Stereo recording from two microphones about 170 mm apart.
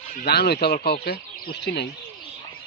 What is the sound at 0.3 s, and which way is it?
Speech, 70° left (ahead or behind).